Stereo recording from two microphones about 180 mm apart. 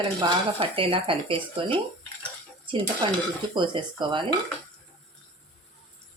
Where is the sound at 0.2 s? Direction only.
30° right (ahead or behind).